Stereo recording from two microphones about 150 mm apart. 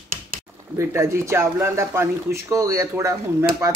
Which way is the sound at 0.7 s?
20° right (ahead or behind).